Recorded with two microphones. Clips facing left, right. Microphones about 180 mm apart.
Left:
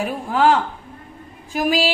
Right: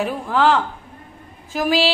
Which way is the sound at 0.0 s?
15° left (ahead or behind).